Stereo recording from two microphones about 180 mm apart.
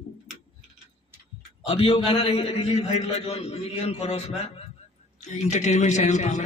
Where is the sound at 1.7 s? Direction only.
30° left (ahead or behind).